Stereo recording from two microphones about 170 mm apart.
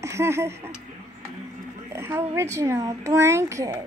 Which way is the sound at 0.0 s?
15° right (ahead or behind).